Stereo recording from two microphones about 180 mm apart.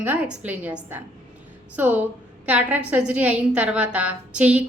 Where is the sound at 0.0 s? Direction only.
10° right (ahead or behind).